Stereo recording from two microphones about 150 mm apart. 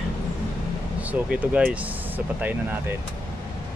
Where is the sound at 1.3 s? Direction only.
10° right (ahead or behind).